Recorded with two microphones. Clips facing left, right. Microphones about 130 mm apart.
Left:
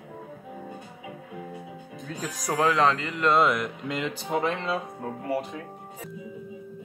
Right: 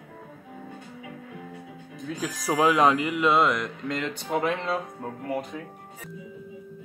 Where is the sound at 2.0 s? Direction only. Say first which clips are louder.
Right 3 dB; centre (ahead or behind).